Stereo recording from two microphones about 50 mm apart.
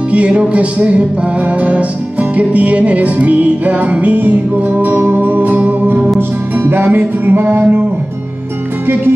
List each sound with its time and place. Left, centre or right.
0.1 s music: right